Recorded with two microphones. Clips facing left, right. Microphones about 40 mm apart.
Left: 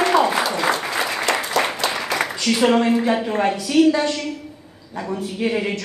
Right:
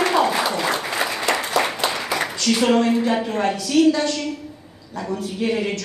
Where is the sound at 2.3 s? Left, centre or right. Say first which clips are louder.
Left 1 dB; centre.